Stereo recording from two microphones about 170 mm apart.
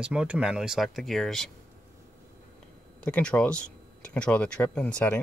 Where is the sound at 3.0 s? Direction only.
5° left (ahead or behind).